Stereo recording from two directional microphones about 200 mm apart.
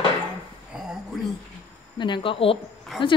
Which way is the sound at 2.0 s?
25° left (ahead or behind).